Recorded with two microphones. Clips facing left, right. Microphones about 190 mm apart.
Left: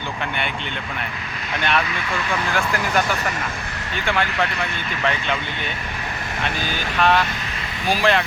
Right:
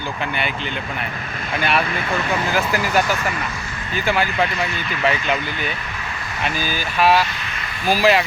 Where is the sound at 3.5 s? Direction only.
60° left (ahead or behind).